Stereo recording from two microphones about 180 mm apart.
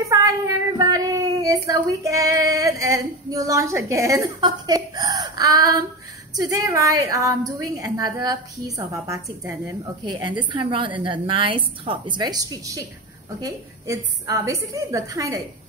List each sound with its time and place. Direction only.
0.1 s a woman's voice: 20° right (ahead or behind)